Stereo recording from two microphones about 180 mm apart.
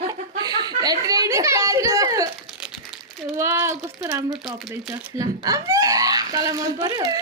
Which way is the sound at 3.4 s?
15° right (ahead or behind).